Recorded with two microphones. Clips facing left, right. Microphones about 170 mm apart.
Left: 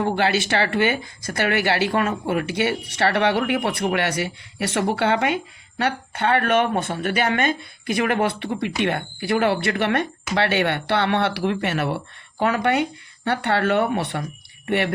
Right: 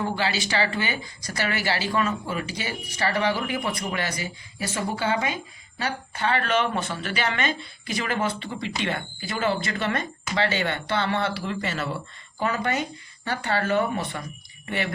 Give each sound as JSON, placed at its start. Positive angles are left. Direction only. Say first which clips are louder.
{"t": 0.0, "sound": "speech", "louder": "left 6 dB", "side_deg": 60}